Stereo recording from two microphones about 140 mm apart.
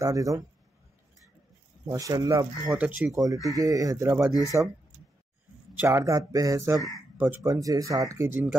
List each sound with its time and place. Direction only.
0.0 s speech: 25° right (ahead or behind)
1.9 s speech: 25° right (ahead or behind)
2.7 s speech: 10° right (ahead or behind)
3.5 s speech: 25° right (ahead or behind)
5.8 s speech: 20° right (ahead or behind)
7.4 s speech: 25° right (ahead or behind)